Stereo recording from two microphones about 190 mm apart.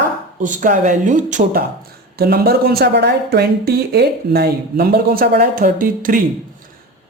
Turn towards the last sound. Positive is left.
turn(degrees=-45)  # may be behind; listen again after turning